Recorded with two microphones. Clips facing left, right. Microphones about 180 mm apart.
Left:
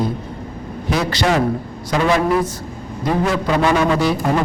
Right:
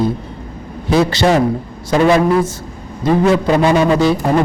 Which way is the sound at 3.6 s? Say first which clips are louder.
Right 3 dB; 25° right (ahead or behind).